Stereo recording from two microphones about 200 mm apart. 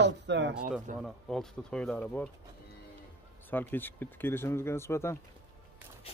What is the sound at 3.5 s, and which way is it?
Speech, 10° left (ahead or behind).